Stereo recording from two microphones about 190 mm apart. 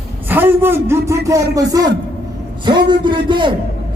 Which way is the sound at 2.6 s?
25° right (ahead or behind).